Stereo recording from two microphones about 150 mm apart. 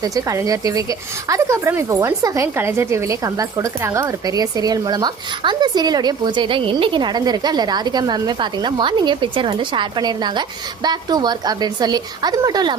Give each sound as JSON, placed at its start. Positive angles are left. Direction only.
{"t": 0.0, "sound": "a woman's voice", "side_deg": -25}